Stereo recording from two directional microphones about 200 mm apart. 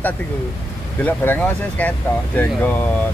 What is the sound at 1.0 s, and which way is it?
Speech, 10° left (ahead or behind).